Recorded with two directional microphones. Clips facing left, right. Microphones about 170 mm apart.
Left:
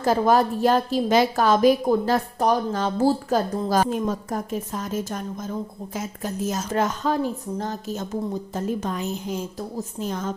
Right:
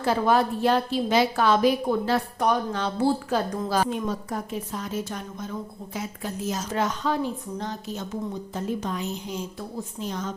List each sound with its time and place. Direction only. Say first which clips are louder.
0.0 s a woman's voice: left 3 dB; 40° left (ahead or behind)